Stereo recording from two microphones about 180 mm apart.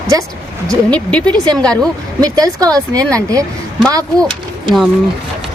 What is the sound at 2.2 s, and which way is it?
Speech, 20° right (ahead or behind).